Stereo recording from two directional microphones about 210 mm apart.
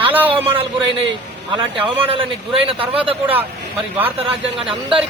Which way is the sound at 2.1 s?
25° right (ahead or behind).